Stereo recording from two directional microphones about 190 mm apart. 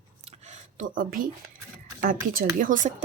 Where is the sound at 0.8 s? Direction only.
45° right (ahead or behind).